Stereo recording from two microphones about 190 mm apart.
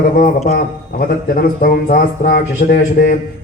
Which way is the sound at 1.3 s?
50° left (ahead or behind).